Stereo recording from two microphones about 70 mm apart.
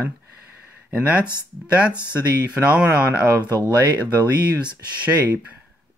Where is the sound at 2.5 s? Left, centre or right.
Centre.